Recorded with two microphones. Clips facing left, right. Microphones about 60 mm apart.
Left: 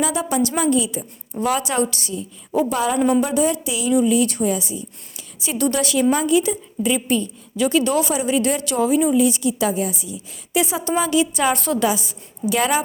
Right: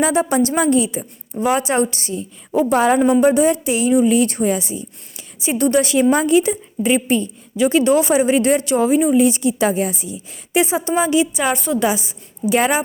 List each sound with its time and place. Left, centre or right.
0.0 s a woman's voice: right
2.6 s a woman's voice: right
3.2 s a woman's voice: right; by 11.8 s centre
11.8 s a woman's voice: right